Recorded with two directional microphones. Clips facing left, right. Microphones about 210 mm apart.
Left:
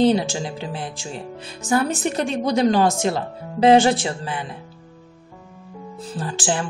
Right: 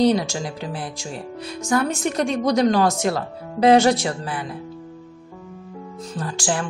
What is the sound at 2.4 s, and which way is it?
Speech, 30° left (ahead or behind).